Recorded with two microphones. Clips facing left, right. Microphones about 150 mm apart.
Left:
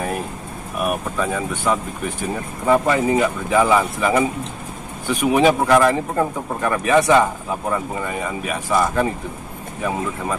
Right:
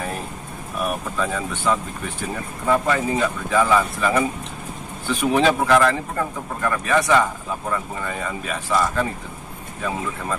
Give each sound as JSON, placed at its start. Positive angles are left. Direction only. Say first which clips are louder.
{"t": 0.7, "sound": "speech", "louder": "left 2 dB", "side_deg": 10}